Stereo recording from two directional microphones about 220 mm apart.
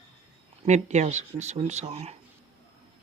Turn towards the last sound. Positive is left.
turn(degrees=-30)  # may be behind; listen again after turning